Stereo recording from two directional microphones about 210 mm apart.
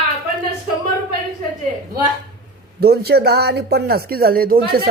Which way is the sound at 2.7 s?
50° right (ahead or behind).